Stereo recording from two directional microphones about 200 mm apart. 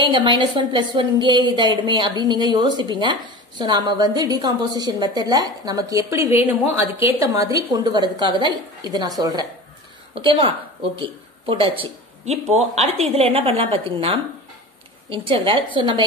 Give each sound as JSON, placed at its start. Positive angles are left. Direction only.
{"t": 0.1, "sound": "a woman's voice", "side_deg": -25}
{"t": 10.1, "sound": "a woman's voice", "side_deg": -25}